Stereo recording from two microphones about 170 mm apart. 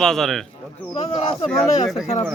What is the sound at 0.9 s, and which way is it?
Speech, 35° left (ahead or behind).